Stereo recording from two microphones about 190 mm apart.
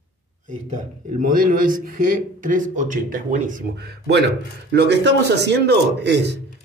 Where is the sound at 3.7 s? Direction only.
60° right (ahead or behind).